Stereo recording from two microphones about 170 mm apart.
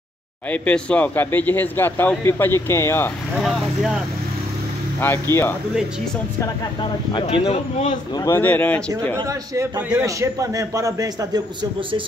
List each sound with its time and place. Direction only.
0.5 s speech: 5° left (ahead or behind)
3.3 s speech: centre (ahead or behind)
5.0 s speech: 15° left (ahead or behind)
6.4 s speech: 25° left (ahead or behind)
8.1 s speech: 20° left (ahead or behind)
9.2 s a man's voice: 20° right (ahead or behind)